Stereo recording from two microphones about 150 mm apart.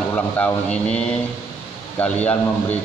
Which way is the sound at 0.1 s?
10° left (ahead or behind).